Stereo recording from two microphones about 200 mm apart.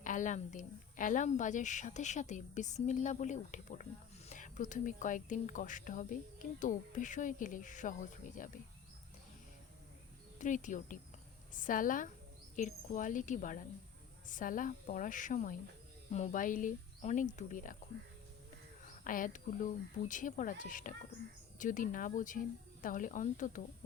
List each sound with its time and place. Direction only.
0.0 s a woman's voice: 40° left (ahead or behind)
10.3 s a woman's voice: 40° left (ahead or behind)
18.9 s a woman's voice: 40° left (ahead or behind)